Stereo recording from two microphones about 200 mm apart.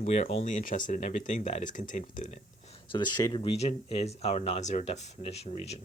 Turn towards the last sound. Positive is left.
turn(degrees=30)  # may be behind; listen again after turning